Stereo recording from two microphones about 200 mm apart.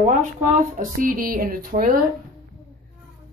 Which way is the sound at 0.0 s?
40° right (ahead or behind).